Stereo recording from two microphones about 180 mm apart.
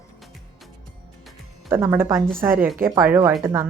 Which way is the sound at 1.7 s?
15° right (ahead or behind).